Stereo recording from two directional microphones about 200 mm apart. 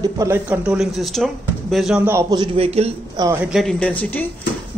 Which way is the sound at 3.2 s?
15° right (ahead or behind).